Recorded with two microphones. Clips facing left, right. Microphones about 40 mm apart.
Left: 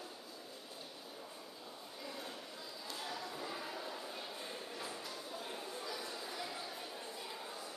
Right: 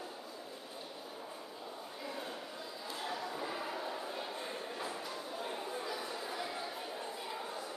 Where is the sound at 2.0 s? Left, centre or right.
Centre.